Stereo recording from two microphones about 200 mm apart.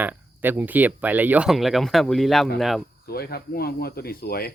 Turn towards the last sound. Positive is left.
turn(degrees=50)  # may be behind; listen again after turning